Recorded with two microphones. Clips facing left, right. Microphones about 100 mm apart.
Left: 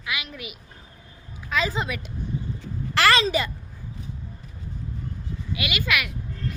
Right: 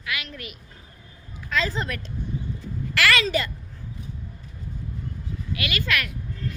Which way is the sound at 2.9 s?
30° left (ahead or behind).